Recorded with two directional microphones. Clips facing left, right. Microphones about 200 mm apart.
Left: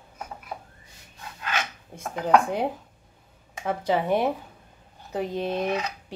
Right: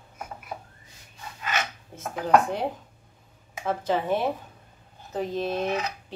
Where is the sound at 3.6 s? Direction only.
10° left (ahead or behind).